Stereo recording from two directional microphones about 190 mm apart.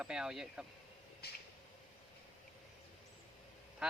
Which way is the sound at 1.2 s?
55° left (ahead or behind).